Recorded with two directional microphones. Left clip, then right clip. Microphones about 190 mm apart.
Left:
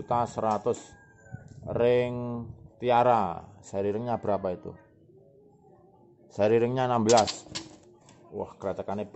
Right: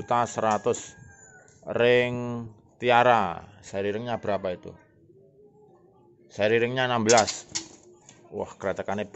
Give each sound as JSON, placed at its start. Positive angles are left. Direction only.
{"t": 0.0, "sound": "speech", "side_deg": 0}
{"t": 6.3, "sound": "speech", "side_deg": 25}
{"t": 8.4, "sound": "speech", "side_deg": 0}